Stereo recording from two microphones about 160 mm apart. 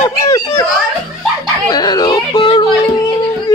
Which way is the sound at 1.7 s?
25° left (ahead or behind).